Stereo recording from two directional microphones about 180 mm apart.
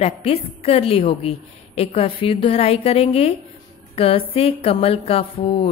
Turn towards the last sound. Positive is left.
turn(degrees=30)  # may be behind; listen again after turning